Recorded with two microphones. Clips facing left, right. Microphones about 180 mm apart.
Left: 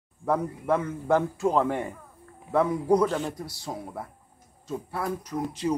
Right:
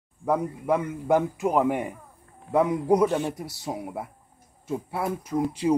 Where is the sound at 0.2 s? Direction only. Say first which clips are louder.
Right 1 dB; 10° right (ahead or behind).